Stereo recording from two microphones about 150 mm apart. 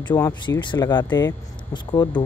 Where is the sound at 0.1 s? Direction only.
30° left (ahead or behind).